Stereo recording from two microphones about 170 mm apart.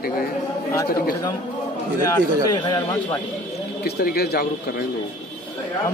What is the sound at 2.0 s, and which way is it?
Speech, 20° left (ahead or behind).